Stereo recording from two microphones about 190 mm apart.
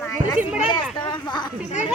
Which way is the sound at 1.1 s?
25° left (ahead or behind).